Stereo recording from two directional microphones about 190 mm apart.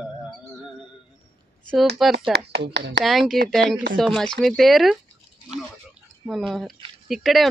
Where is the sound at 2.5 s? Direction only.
65° right (ahead or behind).